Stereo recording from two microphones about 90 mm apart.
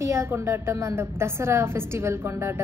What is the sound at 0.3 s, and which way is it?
A woman's voice, 30° right (ahead or behind).